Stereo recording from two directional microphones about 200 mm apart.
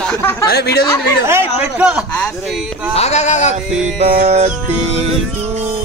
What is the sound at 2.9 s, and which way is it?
Speech, 35° left (ahead or behind).